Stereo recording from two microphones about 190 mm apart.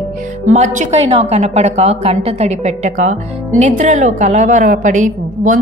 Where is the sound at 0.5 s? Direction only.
40° right (ahead or behind).